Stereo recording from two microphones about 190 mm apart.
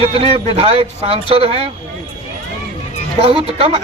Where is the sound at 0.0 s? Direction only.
30° right (ahead or behind).